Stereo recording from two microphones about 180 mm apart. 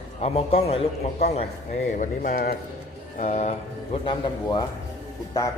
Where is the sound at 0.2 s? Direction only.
35° left (ahead or behind).